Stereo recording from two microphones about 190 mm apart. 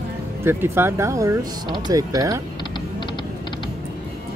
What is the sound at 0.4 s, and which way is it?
Speech, 10° right (ahead or behind).